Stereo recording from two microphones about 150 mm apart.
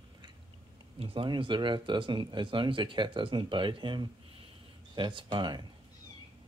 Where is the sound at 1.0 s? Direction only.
35° right (ahead or behind).